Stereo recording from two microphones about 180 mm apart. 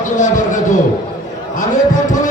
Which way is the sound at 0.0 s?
45° left (ahead or behind).